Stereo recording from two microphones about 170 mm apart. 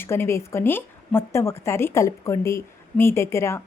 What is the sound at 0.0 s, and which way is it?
A woman's voice, 15° left (ahead or behind).